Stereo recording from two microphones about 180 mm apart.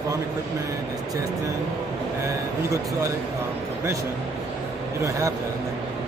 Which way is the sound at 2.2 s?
15° right (ahead or behind).